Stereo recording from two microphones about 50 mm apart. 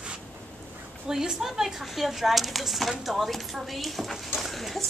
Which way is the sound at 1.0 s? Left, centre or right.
Centre.